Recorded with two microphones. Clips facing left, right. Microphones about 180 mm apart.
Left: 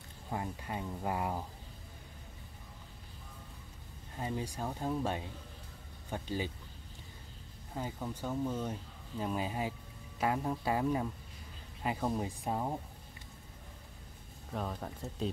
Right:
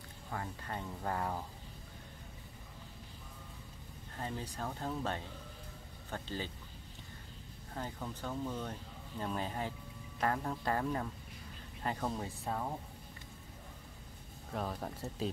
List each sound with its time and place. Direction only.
0.3 s speech: 15° left (ahead or behind)
4.2 s speech: 10° left (ahead or behind)
7.7 s speech: 10° left (ahead or behind)
14.5 s speech: centre (ahead or behind)